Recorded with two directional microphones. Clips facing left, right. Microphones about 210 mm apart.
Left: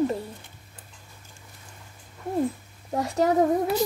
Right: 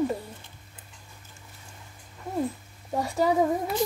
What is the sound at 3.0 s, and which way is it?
Speech, centre (ahead or behind).